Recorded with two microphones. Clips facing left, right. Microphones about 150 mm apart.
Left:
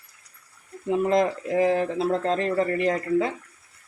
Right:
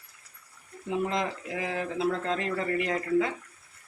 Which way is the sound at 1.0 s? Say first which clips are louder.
Left 9 dB; 45° left (ahead or behind).